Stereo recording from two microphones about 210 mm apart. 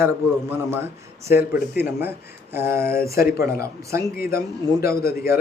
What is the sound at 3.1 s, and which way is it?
Speech, 45° left (ahead or behind).